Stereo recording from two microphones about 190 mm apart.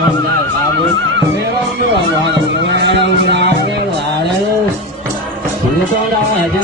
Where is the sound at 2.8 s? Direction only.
70° right (ahead or behind).